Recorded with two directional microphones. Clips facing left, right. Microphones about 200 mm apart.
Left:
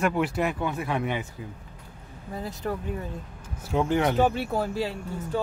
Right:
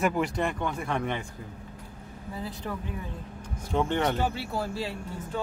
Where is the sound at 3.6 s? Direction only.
5° left (ahead or behind).